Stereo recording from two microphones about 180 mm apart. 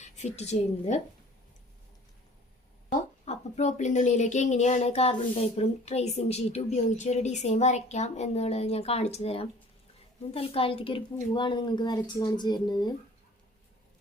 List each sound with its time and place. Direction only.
0.0 s a woman's voice: 40° left (ahead or behind)
3.2 s a woman's voice: 40° left (ahead or behind); by 12.9 s 25° left (ahead or behind)